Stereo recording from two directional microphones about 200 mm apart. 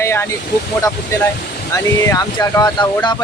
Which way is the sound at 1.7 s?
15° left (ahead or behind).